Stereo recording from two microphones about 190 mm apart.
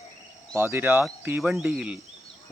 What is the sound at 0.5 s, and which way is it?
Speech, 15° right (ahead or behind).